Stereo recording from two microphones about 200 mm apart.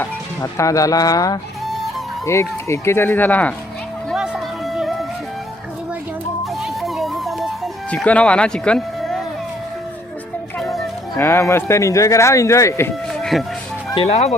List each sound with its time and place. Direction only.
0.0 s speech: 15° left (ahead or behind)
1.6 s music: centre (ahead or behind)
2.2 s speech: 15° left (ahead or behind)
4.1 s music: centre (ahead or behind)
6.4 s music: centre (ahead or behind)
10.6 s music: centre (ahead or behind)
11.1 s speech: 15° left (ahead or behind)
13.3 s speech: centre (ahead or behind)
13.9 s speech: 30° left (ahead or behind)